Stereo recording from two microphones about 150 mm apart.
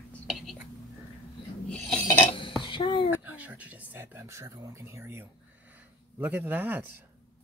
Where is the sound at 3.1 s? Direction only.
10° right (ahead or behind).